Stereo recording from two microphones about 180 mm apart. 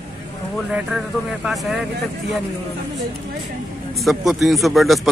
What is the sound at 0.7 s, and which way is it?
Speech, 5° right (ahead or behind).